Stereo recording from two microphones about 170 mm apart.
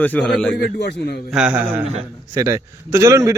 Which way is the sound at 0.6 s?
75° left (ahead or behind).